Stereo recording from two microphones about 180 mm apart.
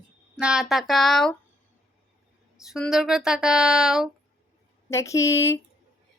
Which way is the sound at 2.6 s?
Centre (ahead or behind).